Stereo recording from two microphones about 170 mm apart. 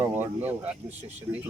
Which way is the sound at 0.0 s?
10° right (ahead or behind).